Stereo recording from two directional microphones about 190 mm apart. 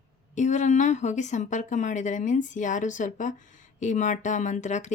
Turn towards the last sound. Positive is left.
turn(degrees=40)  # may be behind; listen again after turning